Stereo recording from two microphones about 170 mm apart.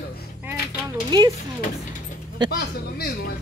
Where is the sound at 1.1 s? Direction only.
25° right (ahead or behind).